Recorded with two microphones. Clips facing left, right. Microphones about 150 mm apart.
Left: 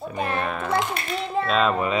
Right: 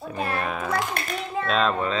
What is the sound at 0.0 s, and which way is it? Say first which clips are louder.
Music: left 1 dB; 5° right (ahead or behind).